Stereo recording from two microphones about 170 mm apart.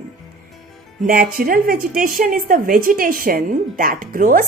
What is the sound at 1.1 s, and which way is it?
A woman's voice, 60° right (ahead or behind).